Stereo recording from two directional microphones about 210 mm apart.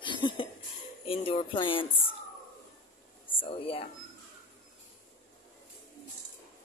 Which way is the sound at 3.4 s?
25° left (ahead or behind).